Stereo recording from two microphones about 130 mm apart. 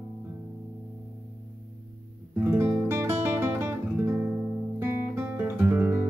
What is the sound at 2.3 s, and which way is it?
Guitar, 20° right (ahead or behind).